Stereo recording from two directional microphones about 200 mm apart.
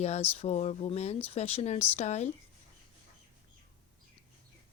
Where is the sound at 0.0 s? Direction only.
30° left (ahead or behind).